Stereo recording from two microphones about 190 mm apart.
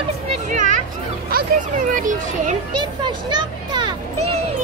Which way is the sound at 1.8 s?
45° right (ahead or behind).